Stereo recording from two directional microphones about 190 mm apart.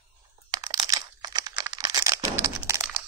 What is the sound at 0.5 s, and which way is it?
Computer keyboard, 20° right (ahead or behind).